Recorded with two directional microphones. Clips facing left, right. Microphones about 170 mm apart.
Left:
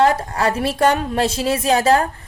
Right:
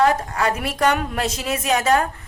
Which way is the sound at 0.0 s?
30° left (ahead or behind).